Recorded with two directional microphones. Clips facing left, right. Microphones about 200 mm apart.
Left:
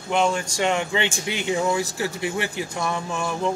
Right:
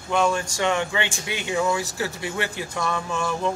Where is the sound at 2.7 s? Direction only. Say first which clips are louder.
Right 2 dB; 15° left (ahead or behind).